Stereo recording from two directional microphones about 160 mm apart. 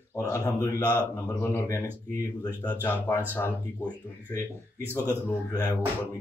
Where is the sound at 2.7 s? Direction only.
15° left (ahead or behind).